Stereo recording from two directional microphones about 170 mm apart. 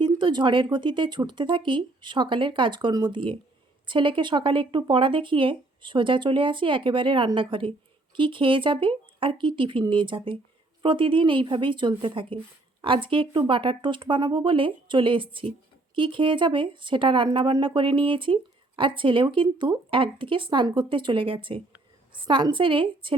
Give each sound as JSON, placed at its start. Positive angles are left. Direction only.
{"t": 0.0, "sound": "speech", "side_deg": -25}